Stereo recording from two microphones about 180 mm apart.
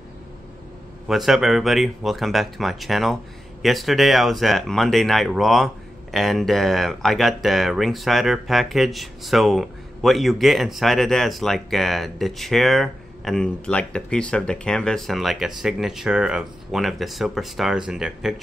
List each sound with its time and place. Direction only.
1.0 s speech: centre (ahead or behind)